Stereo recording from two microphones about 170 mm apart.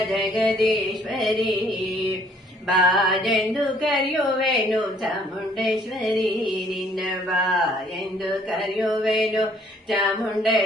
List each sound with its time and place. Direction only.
0.1 s speech: centre (ahead or behind)
2.6 s speech: centre (ahead or behind)
5.5 s speech: centre (ahead or behind)
6.2 s music: 25° left (ahead or behind)
7.0 s speech: centre (ahead or behind)
8.8 s speech: centre (ahead or behind)